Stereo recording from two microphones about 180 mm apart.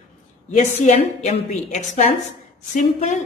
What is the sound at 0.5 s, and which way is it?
Speech, 45° left (ahead or behind).